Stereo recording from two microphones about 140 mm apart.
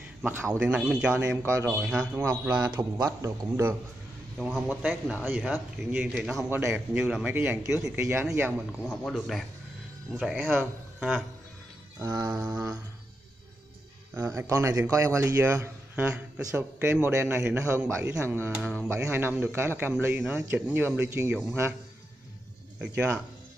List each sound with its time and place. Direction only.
0.2 s a man's voice: 15° right (ahead or behind)
1.4 s a man's voice: 20° right (ahead or behind)
1.7 s a man's voice: 5° right (ahead or behind)
2.6 s a man's voice: 25° right (ahead or behind)
4.4 s speech: centre (ahead or behind)
6.5 s a man's voice: 15° right (ahead or behind)
8.5 s speech: 5° left (ahead or behind)
10.1 s a man's voice: 10° right (ahead or behind)
12.0 s a man's voice: 25° right (ahead or behind)
12.3 s a man's voice: 10° right (ahead or behind)
14.1 s a man's voice: 20° right (ahead or behind)
16.5 s a man's voice: 10° right (ahead or behind)
18.5 s a man's voice: 5° right (ahead or behind)
22.8 s a man's voice: 10° right (ahead or behind)